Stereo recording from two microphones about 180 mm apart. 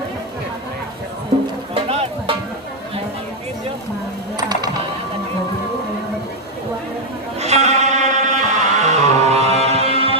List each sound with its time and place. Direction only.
1.7 s music: 30° right (ahead or behind)
4.4 s music: 25° right (ahead or behind)
7.3 s music: 40° right (ahead or behind)